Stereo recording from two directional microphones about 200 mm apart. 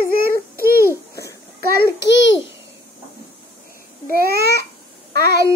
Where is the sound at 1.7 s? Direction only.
60° left (ahead or behind).